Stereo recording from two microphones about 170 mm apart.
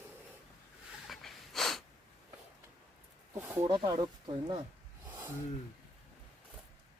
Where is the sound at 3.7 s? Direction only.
25° right (ahead or behind).